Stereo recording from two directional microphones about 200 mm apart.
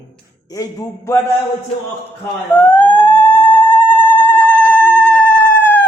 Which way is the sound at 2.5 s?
10° left (ahead or behind).